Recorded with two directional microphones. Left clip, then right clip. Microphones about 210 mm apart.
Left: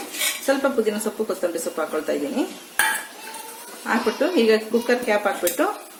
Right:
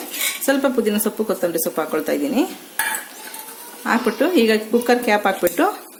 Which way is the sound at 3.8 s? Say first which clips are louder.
Right 3 dB; 45° right (ahead or behind).